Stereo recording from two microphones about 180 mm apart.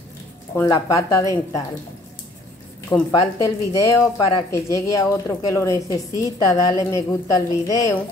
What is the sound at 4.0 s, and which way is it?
A woman's voice, 15° left (ahead or behind).